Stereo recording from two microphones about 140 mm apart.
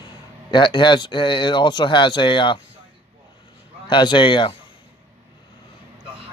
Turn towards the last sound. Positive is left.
turn(degrees=35)  # may be behind; listen again after turning